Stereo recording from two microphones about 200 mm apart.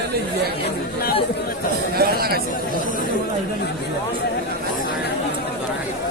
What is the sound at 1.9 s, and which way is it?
Chatter, 50° right (ahead or behind).